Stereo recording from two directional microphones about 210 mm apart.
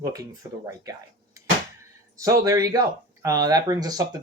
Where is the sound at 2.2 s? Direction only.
15° right (ahead or behind).